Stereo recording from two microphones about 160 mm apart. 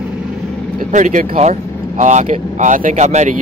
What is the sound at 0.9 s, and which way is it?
Speech, 50° right (ahead or behind).